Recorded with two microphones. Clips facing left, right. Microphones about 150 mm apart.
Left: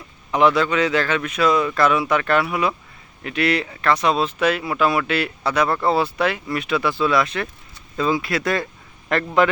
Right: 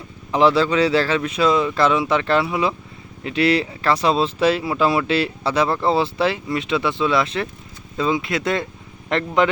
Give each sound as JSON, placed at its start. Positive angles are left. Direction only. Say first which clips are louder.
{"t": 0.3, "sound": "a man's voice", "louder": "right 1 dB", "side_deg": -30}